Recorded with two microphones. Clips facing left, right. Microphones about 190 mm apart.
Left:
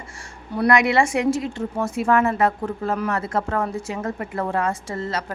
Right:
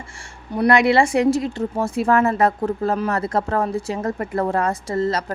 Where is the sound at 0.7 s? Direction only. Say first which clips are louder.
Right 3 dB; 30° right (ahead or behind).